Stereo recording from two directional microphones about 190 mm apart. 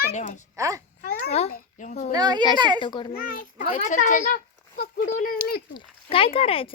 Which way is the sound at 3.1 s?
50° left (ahead or behind).